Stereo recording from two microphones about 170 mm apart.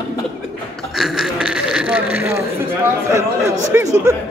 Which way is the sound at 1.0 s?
5° right (ahead or behind).